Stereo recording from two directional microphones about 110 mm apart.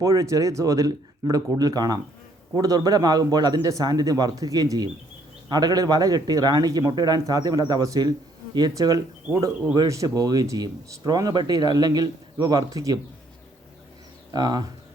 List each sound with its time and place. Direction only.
0.0 s speech: 30° right (ahead or behind)
14.3 s speech: 40° right (ahead or behind)